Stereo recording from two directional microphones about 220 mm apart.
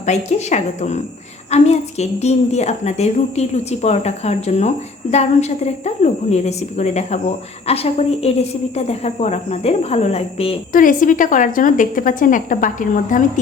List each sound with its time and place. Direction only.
0.0 s a woman's voice: 30° left (ahead or behind)
10.7 s a woman's voice: 40° left (ahead or behind)